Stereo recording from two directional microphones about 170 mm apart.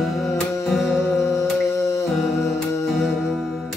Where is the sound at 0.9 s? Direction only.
15° left (ahead or behind).